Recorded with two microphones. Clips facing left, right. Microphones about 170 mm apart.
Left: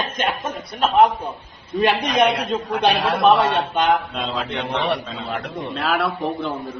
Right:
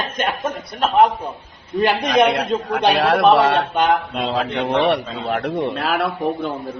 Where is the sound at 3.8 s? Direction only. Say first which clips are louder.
Right 1 dB; 10° right (ahead or behind).